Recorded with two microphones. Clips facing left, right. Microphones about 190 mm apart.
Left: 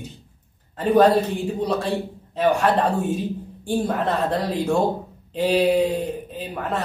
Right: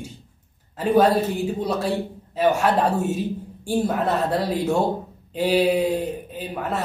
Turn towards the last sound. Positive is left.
turn(degrees=-5)  # may be behind; listen again after turning